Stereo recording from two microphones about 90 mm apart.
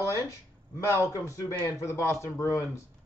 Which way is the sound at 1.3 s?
35° left (ahead or behind).